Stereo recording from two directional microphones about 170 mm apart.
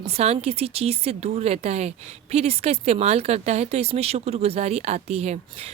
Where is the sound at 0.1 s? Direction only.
40° right (ahead or behind).